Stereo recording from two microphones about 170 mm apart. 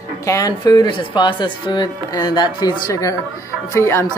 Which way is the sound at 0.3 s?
20° left (ahead or behind).